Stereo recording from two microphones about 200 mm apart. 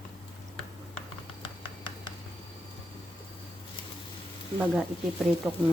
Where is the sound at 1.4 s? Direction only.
25° left (ahead or behind).